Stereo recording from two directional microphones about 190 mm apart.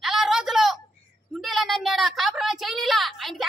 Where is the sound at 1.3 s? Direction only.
Centre (ahead or behind).